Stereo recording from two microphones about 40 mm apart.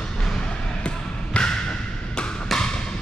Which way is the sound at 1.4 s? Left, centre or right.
Left.